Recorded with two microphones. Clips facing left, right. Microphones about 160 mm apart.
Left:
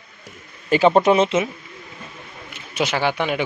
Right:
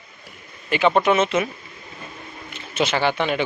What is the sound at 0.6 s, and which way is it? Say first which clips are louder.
Speech: left 3 dB; 35° left (ahead or behind).